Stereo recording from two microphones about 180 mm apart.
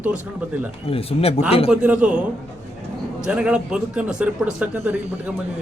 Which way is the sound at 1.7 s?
5° right (ahead or behind).